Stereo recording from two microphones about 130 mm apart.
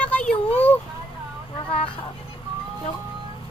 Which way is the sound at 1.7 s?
45° left (ahead or behind).